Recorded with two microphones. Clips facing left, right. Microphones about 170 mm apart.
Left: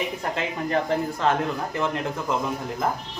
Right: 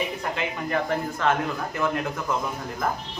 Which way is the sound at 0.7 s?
30° left (ahead or behind).